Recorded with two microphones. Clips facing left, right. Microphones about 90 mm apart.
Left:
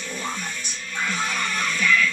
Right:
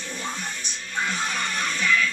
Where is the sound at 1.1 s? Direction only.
30° right (ahead or behind).